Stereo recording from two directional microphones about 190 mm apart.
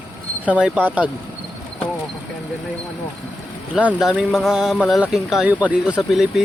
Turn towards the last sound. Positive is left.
turn(degrees=0)  # may be behind; listen again after turning